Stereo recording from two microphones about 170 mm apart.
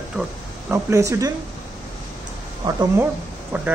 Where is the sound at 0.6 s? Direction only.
15° right (ahead or behind).